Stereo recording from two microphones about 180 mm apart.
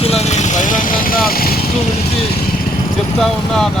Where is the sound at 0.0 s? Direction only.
35° left (ahead or behind); by 1.5 s 55° left (ahead or behind).